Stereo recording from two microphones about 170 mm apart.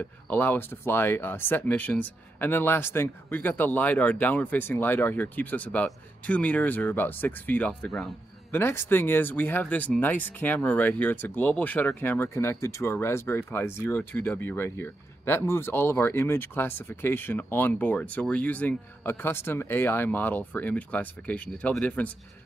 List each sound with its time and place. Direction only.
0.0 s speech: 10° left (ahead or behind)